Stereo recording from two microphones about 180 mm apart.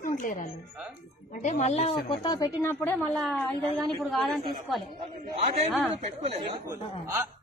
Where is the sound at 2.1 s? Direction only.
25° left (ahead or behind); by 4.8 s centre (ahead or behind).